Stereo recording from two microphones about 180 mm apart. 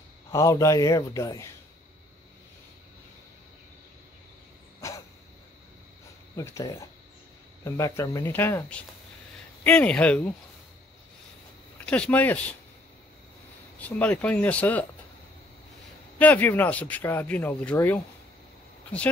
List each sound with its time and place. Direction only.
0.3 s speech: 15° left (ahead or behind)
4.8 s dog: 15° left (ahead or behind)
6.3 s speech: 20° left (ahead or behind)
11.8 s speech: 5° left (ahead or behind)
13.7 s speech: 10° left (ahead or behind)
16.2 s speech: 10° left (ahead or behind)